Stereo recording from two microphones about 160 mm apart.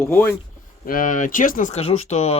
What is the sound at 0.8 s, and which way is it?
Speech, 60° left (ahead or behind).